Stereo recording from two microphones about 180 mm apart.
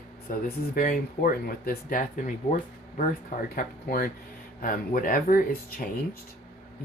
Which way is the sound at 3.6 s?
55° left (ahead or behind).